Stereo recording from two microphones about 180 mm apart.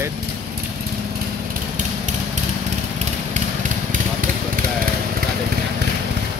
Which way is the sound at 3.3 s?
45° right (ahead or behind).